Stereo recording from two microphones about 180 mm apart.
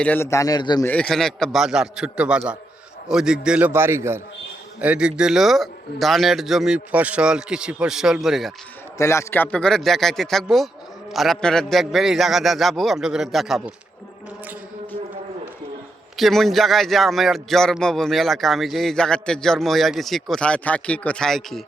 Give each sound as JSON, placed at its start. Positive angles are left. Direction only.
{"t": 0.0, "sound": "a man's voice", "side_deg": 10}
{"t": 0.9, "sound": "a man's voice", "side_deg": 5}
{"t": 9.0, "sound": "a man's voice", "side_deg": 15}
{"t": 16.1, "sound": "a man's voice", "side_deg": 0}